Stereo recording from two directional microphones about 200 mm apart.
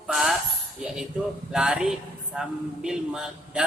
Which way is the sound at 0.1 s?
Centre (ahead or behind).